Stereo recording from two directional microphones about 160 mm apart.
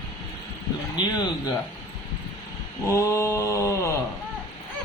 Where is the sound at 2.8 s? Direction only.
20° left (ahead or behind).